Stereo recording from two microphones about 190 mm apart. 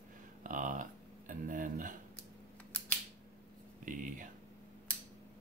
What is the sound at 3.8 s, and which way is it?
Speech, 45° right (ahead or behind).